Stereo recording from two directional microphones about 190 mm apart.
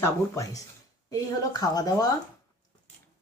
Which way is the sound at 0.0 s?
15° left (ahead or behind).